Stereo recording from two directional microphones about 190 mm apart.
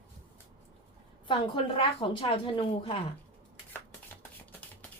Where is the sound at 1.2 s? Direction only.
25° left (ahead or behind).